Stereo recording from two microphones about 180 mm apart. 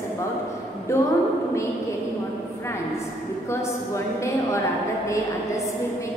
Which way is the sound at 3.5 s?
15° left (ahead or behind).